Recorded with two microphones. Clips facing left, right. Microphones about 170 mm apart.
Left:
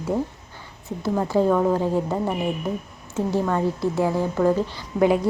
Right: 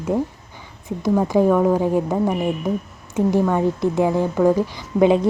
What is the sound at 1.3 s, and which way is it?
A woman's voice, 10° right (ahead or behind).